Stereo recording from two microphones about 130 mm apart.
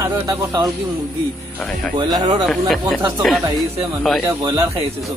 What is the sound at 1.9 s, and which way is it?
Speech, 35° right (ahead or behind).